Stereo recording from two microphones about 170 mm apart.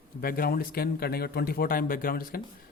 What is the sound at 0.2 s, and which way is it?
Speech, 60° left (ahead or behind).